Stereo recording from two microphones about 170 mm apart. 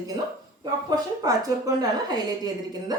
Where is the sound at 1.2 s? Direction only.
20° right (ahead or behind).